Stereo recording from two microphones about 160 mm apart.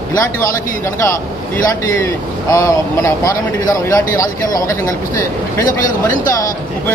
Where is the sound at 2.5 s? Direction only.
20° left (ahead or behind).